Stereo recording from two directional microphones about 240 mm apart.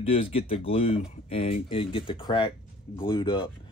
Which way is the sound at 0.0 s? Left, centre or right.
Left.